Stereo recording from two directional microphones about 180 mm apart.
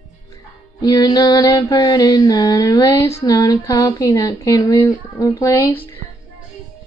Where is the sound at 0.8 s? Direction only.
20° left (ahead or behind).